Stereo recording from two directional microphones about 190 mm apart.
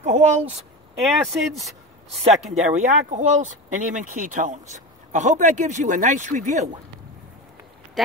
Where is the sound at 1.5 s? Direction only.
Centre (ahead or behind).